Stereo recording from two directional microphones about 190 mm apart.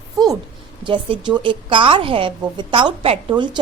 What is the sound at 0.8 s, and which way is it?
A woman's voice, 25° right (ahead or behind).